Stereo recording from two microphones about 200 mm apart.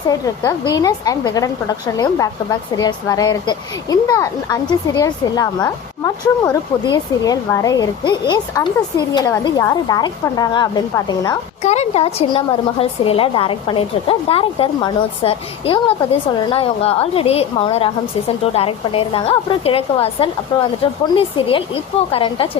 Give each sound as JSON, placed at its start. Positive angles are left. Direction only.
{"t": 0.7, "sound": "speech", "side_deg": 20}
{"t": 11.6, "sound": "speech", "side_deg": 35}